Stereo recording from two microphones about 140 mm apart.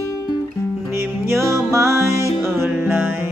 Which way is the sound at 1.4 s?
20° right (ahead or behind).